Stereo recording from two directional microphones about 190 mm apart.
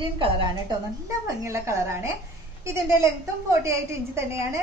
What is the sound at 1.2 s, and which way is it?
A woman's voice, 15° right (ahead or behind).